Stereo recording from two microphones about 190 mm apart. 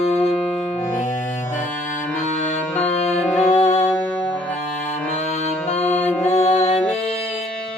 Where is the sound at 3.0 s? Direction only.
35° left (ahead or behind).